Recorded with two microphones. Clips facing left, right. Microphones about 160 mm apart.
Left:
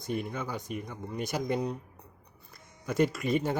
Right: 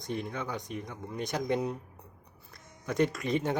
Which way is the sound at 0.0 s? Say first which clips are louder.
Left 1 dB; 10° left (ahead or behind).